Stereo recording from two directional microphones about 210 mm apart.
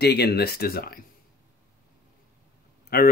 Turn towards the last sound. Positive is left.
turn(degrees=50)  # may be behind; listen again after turning